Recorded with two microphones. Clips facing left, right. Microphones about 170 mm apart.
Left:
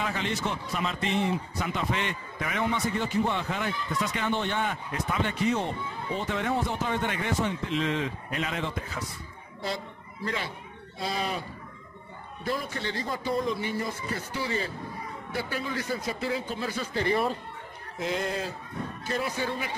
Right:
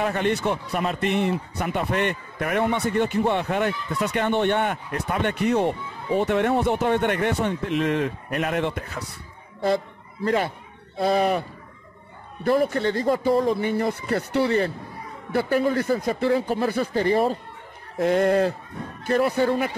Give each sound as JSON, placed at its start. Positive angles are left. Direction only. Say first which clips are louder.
{"t": 0.0, "sound": "a man's voice", "louder": "right 8 dB", "side_deg": -60}
{"t": 10.2, "sound": "a man's voice", "louder": "right 10 dB", "side_deg": -50}
{"t": 12.4, "sound": "a man's voice", "louder": "right 11 dB", "side_deg": -55}
{"t": 17.9, "sound": "a man's voice", "louder": "right 11 dB", "side_deg": -60}